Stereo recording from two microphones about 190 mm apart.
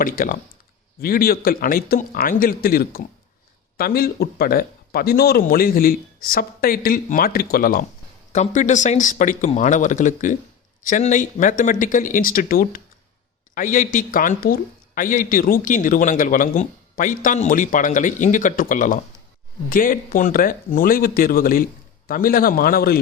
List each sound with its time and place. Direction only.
0.0 s a woman's voice: 45° left (ahead or behind)